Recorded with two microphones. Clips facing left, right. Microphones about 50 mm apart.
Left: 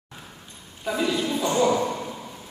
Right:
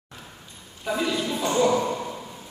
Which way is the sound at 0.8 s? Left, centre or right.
Centre.